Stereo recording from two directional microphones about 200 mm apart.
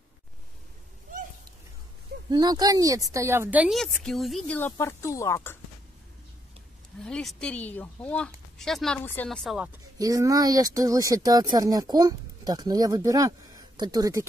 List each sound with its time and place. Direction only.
2.2 s a woman's voice: 20° right (ahead or behind); by 5.6 s 10° left (ahead or behind)
7.0 s a woman's voice: 5° left (ahead or behind)
9.9 s speech: 15° right (ahead or behind)